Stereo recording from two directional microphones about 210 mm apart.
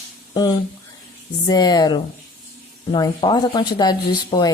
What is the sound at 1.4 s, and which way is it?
Speech, 20° left (ahead or behind).